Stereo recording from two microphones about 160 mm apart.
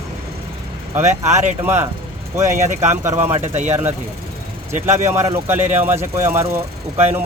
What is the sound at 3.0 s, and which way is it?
Speech, 15° right (ahead or behind).